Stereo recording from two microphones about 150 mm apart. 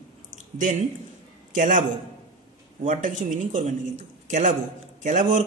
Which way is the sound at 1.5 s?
60° right (ahead or behind).